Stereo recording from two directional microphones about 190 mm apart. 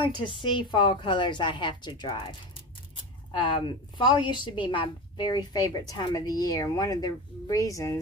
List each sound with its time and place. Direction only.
0.0 s a woman's voice: 25° left (ahead or behind)
3.3 s a woman's voice: 25° left (ahead or behind)